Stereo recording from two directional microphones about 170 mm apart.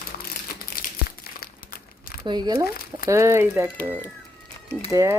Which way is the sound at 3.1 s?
15° right (ahead or behind).